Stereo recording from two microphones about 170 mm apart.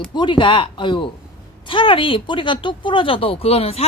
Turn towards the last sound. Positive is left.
turn(degrees=35)  # may be behind; listen again after turning